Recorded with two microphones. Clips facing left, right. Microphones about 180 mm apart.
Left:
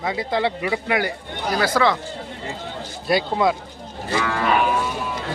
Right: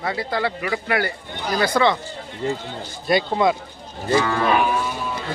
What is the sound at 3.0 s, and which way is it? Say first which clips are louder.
Speech: right 1 dB; 5° left (ahead or behind).